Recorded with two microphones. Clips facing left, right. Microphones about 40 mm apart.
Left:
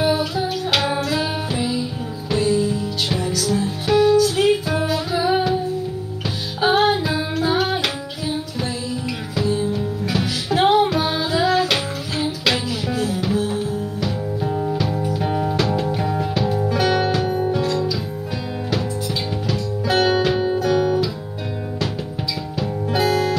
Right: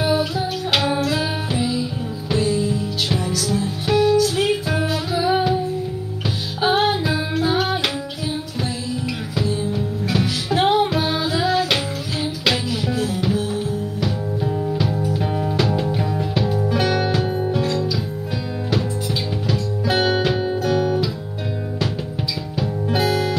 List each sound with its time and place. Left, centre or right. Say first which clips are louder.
0.0 s music: even; centre
6.6 s music: left 1 dB; centre
9.4 s music: left 2 dB; centre
15.5 s music: even; centre
19.4 s music: right 1 dB; centre
22.6 s music: even; centre